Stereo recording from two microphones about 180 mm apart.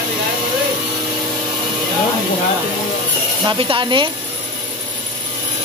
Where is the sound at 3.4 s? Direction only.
25° right (ahead or behind).